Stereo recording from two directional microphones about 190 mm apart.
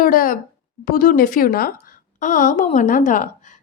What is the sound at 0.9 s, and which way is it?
A woman's voice, 50° left (ahead or behind).